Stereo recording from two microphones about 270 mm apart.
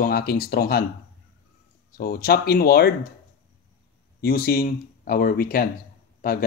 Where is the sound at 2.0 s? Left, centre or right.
Left.